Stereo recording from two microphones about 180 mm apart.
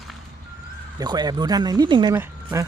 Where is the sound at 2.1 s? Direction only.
15° right (ahead or behind).